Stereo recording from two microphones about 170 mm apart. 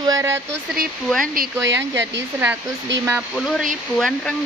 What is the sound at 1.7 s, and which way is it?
Speech, 15° right (ahead or behind).